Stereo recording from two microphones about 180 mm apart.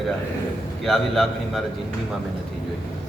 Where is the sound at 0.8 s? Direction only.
Centre (ahead or behind).